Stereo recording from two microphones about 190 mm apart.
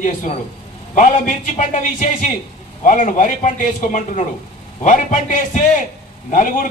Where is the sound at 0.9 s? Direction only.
40° left (ahead or behind).